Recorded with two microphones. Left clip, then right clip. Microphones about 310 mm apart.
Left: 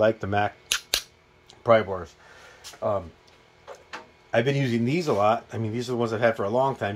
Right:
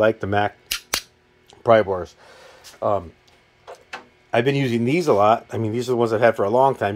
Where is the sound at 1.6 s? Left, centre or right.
Centre.